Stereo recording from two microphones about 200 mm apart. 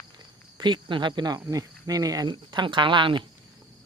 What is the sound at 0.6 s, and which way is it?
Cricket, 25° right (ahead or behind).